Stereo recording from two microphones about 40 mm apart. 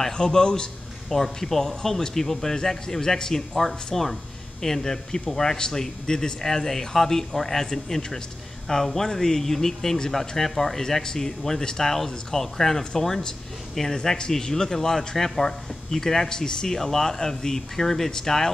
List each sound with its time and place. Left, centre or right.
0.2 s a man's voice: centre
1.1 s a man's voice: centre